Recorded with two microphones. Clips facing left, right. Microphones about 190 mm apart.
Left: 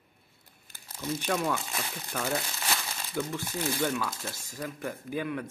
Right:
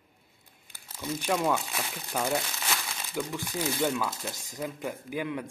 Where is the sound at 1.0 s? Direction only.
10° right (ahead or behind).